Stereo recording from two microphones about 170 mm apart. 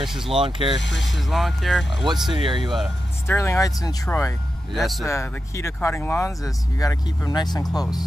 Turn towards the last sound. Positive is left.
turn(degrees=25)  # may be behind; listen again after turning